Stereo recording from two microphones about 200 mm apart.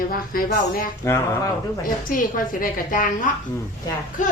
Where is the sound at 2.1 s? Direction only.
45° left (ahead or behind).